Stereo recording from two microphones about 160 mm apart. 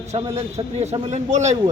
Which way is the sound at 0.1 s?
45° right (ahead or behind).